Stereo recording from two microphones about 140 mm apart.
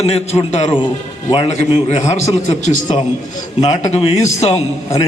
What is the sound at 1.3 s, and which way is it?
Speech, 40° left (ahead or behind).